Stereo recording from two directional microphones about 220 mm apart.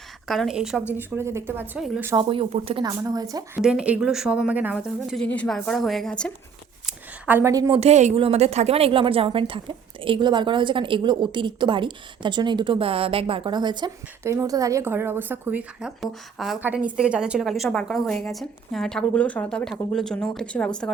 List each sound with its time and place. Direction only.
0.3 s a woman's voice: centre (ahead or behind)
2.1 s a woman's voice: 25° right (ahead or behind)
3.6 s a woman's voice: 5° right (ahead or behind)
6.8 s a sound: 10° right (ahead or behind)
7.8 s a woman's voice: 30° right (ahead or behind); by 20.7 s 5° left (ahead or behind)